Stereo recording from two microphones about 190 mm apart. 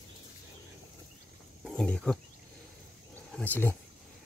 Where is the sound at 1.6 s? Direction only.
5° left (ahead or behind).